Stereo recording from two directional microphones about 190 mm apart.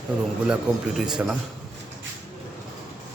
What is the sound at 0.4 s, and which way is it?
Speech, 5° right (ahead or behind).